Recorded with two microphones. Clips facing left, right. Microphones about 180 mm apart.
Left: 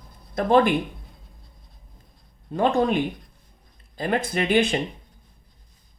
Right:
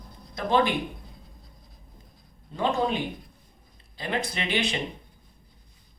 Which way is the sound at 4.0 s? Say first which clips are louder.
Left 6 dB; 50° left (ahead or behind).